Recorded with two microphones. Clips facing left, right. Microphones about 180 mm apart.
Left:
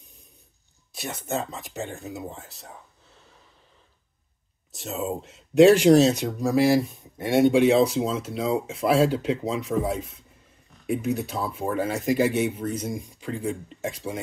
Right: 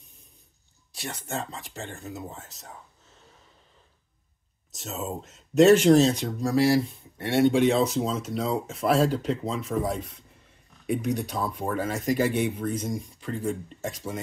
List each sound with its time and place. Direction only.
1.2 s speech: 20° left (ahead or behind)
5.7 s speech: 10° left (ahead or behind)